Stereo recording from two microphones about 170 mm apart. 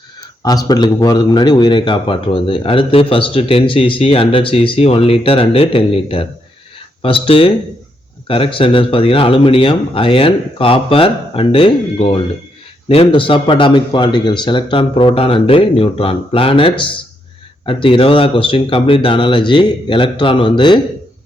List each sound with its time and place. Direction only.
0.4 s a man's voice: 25° left (ahead or behind)